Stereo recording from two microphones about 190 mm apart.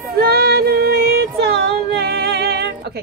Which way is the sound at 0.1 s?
55° right (ahead or behind).